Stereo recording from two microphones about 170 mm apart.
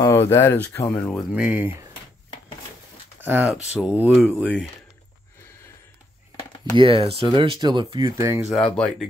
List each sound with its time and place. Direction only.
0.0 s speech: 15° left (ahead or behind)
1.3 s speech: 10° right (ahead or behind)
3.3 s speech: 10° right (ahead or behind)
6.8 s speech: 30° right (ahead or behind)
8.5 s speech: 5° left (ahead or behind)